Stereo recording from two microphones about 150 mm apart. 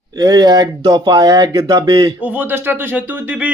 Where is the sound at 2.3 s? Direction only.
15° right (ahead or behind).